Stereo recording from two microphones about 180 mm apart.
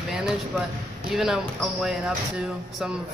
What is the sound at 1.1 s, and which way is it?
Speech, centre (ahead or behind).